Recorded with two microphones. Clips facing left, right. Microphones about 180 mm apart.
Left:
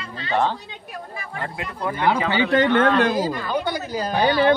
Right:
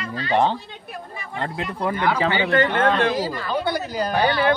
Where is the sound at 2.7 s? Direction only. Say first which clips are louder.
Left 2 dB; 35° right (ahead or behind).